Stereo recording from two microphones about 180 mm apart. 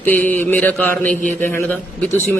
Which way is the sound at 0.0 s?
10° left (ahead or behind).